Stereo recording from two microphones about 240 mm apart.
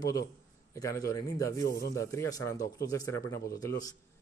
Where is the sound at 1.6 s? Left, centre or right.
Left.